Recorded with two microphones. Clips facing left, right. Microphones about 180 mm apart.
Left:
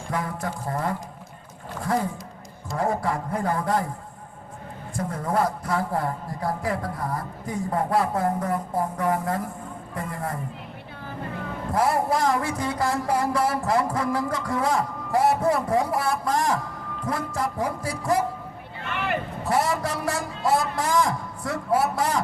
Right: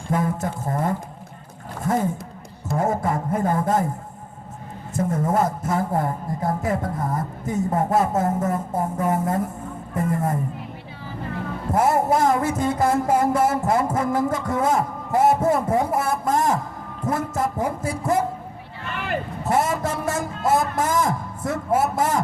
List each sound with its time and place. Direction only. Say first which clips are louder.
0.1 s a man's voice: right 5 dB; 25° right (ahead or behind)
4.9 s a man's voice: right 4 dB; 25° right (ahead or behind)
11.7 s a man's voice: right 3 dB; 25° right (ahead or behind)
19.5 s a man's voice: right 2 dB; 25° right (ahead or behind)